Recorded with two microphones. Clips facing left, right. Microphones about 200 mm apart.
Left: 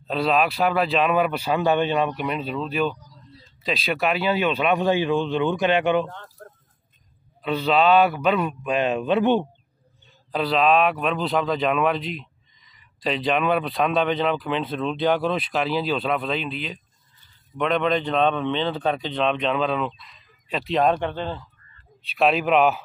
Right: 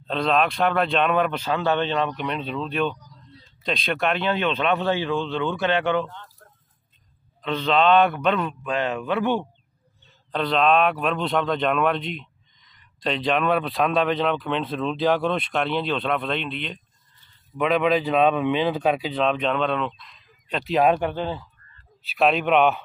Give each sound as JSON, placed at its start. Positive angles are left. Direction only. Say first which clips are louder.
{"t": 0.0, "sound": "speech", "louder": "left 1 dB", "side_deg": 5}
{"t": 6.0, "sound": "fowl", "louder": "left 3 dB", "side_deg": 50}
{"t": 7.4, "sound": "speech", "louder": "left 1 dB", "side_deg": 10}
{"t": 10.3, "sound": "a man's voice", "louder": "even", "side_deg": 5}